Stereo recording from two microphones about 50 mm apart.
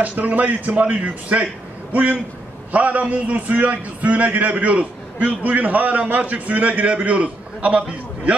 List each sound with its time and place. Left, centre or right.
0.0 s a man's voice: right